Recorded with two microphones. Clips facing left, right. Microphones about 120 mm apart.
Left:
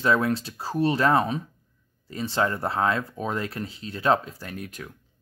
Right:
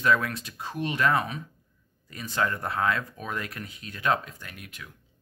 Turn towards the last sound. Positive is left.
turn(degrees=40)  # may be behind; listen again after turning